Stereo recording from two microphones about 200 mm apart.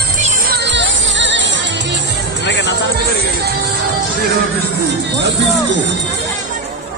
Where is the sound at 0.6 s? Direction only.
60° right (ahead or behind).